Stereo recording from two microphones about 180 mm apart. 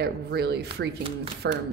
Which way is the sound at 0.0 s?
65° right (ahead or behind).